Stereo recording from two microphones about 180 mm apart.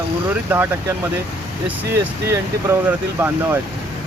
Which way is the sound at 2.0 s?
15° right (ahead or behind).